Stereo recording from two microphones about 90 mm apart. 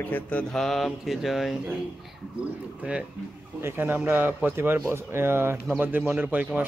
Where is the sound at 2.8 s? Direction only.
15° right (ahead or behind).